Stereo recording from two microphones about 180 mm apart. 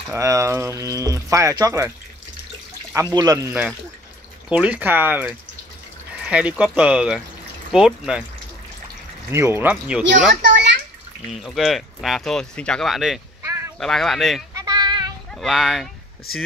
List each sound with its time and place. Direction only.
0.0 s speech: 15° right (ahead or behind)
3.2 s speech: 20° right (ahead or behind); by 8.2 s 5° right (ahead or behind)
9.3 s speech: 15° right (ahead or behind)
10.3 s a sound: 70° right (ahead or behind)
11.3 s speech: centre (ahead or behind)
13.4 s a sound: 15° right (ahead or behind)
13.7 s speech: centre (ahead or behind)
14.5 s child singing: 20° right (ahead or behind)
15.3 s speech: centre (ahead or behind)